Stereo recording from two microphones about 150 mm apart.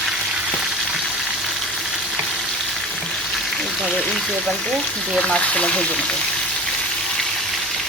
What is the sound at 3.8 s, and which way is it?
A woman's voice, centre (ahead or behind).